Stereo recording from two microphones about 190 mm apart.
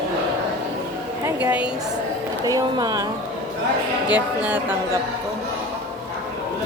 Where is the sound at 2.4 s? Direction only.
20° right (ahead or behind).